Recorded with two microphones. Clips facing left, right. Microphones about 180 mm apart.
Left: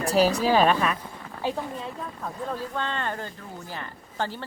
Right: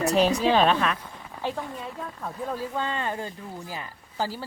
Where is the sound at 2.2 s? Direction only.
5° right (ahead or behind).